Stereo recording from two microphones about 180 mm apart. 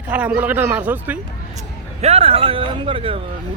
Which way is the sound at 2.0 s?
35° right (ahead or behind).